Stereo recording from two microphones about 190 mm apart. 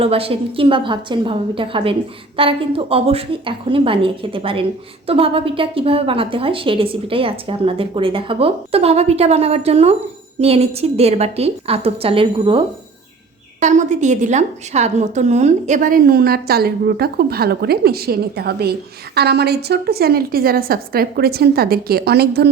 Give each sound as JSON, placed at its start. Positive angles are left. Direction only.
{"t": 0.0, "sound": "a woman's voice", "side_deg": -30}
{"t": 13.6, "sound": "a woman's voice", "side_deg": -40}